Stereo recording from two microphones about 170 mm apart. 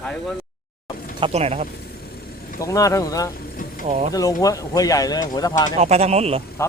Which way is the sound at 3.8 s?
40° right (ahead or behind).